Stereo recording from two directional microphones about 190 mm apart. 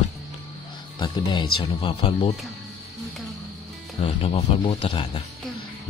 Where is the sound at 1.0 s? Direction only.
25° left (ahead or behind).